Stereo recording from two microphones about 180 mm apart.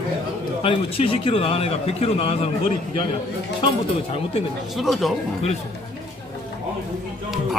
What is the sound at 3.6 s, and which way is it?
Speech, 30° left (ahead or behind).